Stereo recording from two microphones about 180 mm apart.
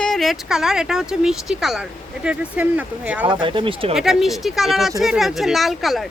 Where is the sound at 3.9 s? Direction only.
Centre (ahead or behind).